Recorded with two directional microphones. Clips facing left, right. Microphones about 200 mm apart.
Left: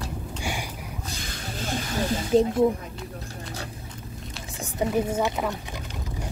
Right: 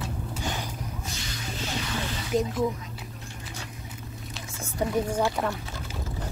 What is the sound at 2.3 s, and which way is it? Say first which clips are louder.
Speech: left 6 dB; 30° left (ahead or behind).